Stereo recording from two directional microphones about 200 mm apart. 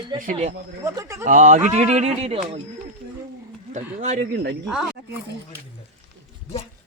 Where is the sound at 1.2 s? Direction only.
40° right (ahead or behind).